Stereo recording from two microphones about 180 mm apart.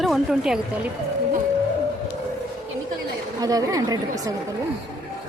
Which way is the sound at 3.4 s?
20° right (ahead or behind).